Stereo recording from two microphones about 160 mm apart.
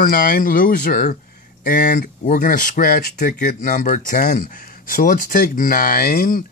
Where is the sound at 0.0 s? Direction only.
60° left (ahead or behind).